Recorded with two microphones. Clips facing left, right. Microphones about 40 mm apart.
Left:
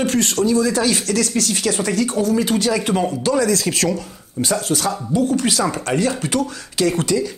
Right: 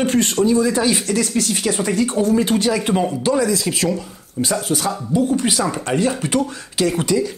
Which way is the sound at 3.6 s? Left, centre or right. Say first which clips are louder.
Left 1 dB; centre.